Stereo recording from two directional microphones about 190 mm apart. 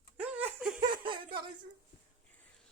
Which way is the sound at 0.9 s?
25° right (ahead or behind).